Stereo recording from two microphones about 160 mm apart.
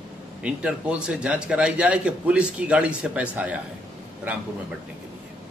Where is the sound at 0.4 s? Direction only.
5° right (ahead or behind).